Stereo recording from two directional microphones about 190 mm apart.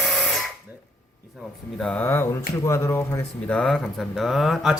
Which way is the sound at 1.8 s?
5° left (ahead or behind).